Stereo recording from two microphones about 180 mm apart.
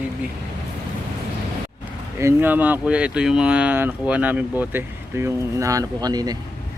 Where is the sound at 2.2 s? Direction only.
15° right (ahead or behind).